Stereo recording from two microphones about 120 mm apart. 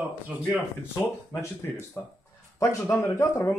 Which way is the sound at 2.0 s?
20° left (ahead or behind).